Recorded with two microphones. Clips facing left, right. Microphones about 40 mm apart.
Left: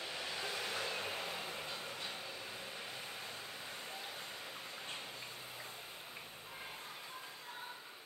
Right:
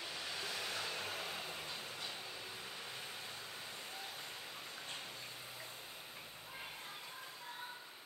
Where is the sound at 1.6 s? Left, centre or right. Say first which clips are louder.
Left 2 dB; left.